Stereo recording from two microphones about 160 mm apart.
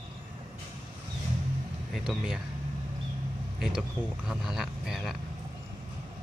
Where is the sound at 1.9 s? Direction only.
Centre (ahead or behind).